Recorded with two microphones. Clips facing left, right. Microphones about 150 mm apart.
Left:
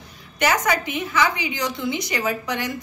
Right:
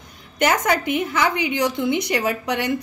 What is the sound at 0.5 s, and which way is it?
A woman's voice, 55° right (ahead or behind).